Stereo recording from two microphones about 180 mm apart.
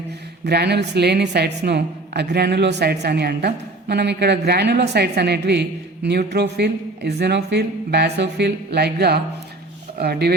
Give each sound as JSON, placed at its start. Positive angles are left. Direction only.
{"t": 0.4, "sound": "a woman's voice", "side_deg": -65}